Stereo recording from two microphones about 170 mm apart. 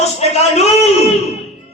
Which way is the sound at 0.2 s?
40° left (ahead or behind).